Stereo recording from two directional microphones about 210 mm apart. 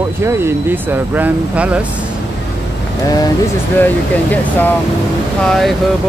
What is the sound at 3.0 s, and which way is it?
Speech, 15° left (ahead or behind).